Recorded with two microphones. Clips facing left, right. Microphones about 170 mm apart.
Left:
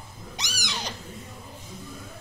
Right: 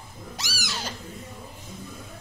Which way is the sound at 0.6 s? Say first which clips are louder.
Even; 15° left (ahead or behind).